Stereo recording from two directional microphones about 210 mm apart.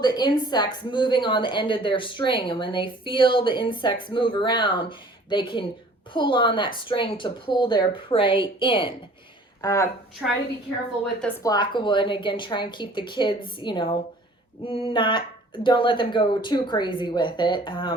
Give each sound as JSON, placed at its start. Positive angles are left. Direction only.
{"t": 0.0, "sound": "a woman's voice", "side_deg": 20}
{"t": 10.2, "sound": "a woman's voice", "side_deg": 0}
{"t": 11.4, "sound": "a woman's voice", "side_deg": 20}